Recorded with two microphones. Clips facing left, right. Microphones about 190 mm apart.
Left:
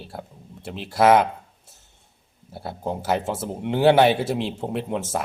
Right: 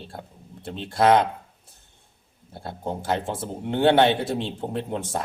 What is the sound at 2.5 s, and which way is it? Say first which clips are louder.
Speech: left 2 dB; 5° left (ahead or behind).